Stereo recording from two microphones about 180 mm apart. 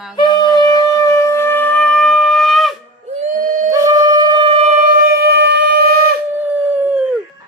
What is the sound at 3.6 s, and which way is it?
Wind instrument, 20° right (ahead or behind).